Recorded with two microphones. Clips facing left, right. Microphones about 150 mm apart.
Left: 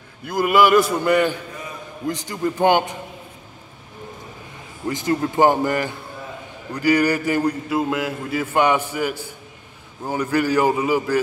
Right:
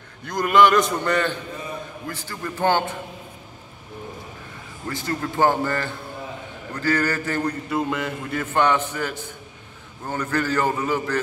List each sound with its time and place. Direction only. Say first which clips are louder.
0.2 s a man's voice: left 1 dB; 5° left (ahead or behind)
4.8 s a man's voice: left 6 dB; 20° left (ahead or behind)